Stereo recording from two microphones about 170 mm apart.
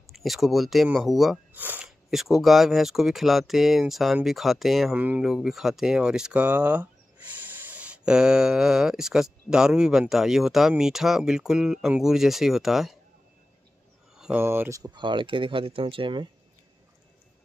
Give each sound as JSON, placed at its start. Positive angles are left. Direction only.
{"t": 0.0, "sound": "speech", "side_deg": 0}
{"t": 14.1, "sound": "a sound", "side_deg": -5}
{"t": 14.4, "sound": "speech", "side_deg": -15}